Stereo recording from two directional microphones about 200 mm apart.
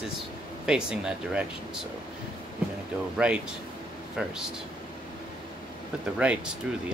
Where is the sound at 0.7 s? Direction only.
5° right (ahead or behind).